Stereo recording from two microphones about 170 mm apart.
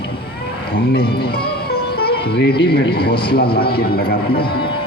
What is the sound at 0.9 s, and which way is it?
Music, 65° left (ahead or behind).